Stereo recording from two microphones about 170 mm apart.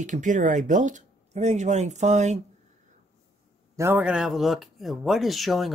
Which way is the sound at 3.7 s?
10° right (ahead or behind).